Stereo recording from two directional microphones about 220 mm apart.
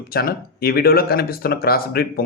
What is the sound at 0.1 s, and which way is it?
Speech, 45° left (ahead or behind).